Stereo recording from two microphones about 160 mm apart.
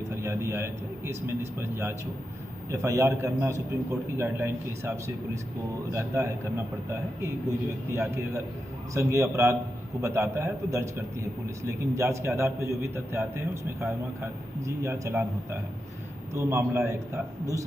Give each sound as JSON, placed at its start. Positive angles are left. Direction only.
{"t": 0.1, "sound": "a man's voice", "side_deg": -15}
{"t": 16.3, "sound": "a man's voice", "side_deg": -15}